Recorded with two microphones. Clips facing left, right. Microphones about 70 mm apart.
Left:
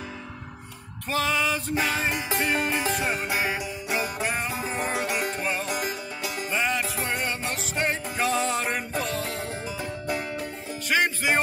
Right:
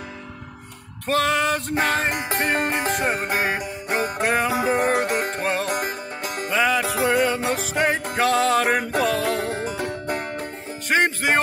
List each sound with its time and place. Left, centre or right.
1.0 s music: right
4.3 s music: right
4.7 s music: right
5.8 s music: right
6.5 s music: right